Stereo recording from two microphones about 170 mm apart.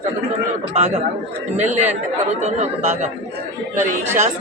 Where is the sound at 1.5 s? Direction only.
45° right (ahead or behind).